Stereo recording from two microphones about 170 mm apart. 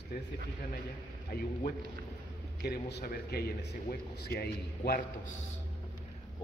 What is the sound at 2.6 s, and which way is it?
A man's voice, 75° left (ahead or behind).